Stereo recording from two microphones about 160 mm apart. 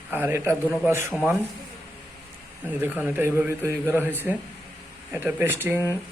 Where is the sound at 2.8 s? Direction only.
10° right (ahead or behind).